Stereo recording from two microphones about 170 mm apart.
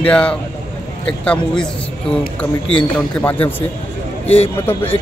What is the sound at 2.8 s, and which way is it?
Speech, 10° left (ahead or behind).